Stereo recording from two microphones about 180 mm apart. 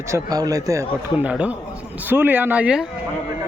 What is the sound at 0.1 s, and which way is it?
A man's voice, 20° right (ahead or behind).